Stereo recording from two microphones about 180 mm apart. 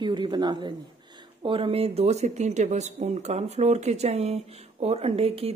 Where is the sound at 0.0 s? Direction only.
25° right (ahead or behind).